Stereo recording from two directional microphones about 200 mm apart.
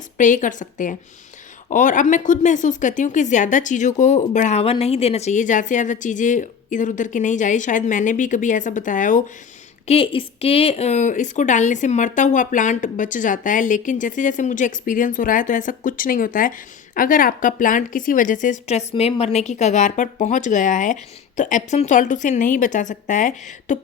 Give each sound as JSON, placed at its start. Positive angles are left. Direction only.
{"t": 0.2, "sound": "speech", "side_deg": 40}
{"t": 9.8, "sound": "speech", "side_deg": 30}